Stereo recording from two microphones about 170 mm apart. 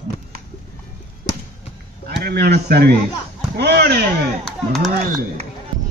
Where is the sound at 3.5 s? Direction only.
70° right (ahead or behind).